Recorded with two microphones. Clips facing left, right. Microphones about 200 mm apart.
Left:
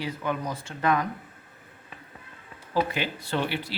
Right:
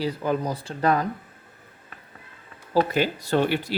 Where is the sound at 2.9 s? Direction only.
40° right (ahead or behind).